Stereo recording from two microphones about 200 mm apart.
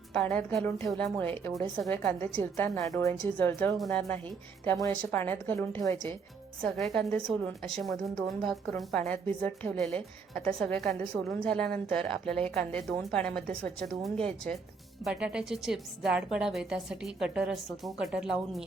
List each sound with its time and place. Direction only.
0.1 s a woman's voice: 5° left (ahead or behind)